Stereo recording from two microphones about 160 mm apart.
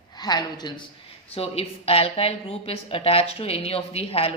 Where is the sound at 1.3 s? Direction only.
35° left (ahead or behind).